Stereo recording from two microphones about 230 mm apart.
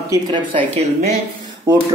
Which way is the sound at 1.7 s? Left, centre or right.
Centre.